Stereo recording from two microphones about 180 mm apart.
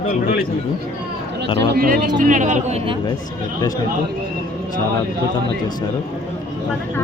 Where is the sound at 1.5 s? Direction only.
55° right (ahead or behind); by 3.0 s 30° right (ahead or behind).